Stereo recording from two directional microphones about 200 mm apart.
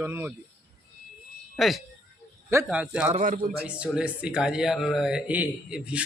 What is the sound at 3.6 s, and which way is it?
Speech, 5° right (ahead or behind).